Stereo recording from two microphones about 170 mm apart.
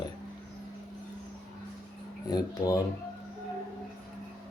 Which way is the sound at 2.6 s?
20° left (ahead or behind).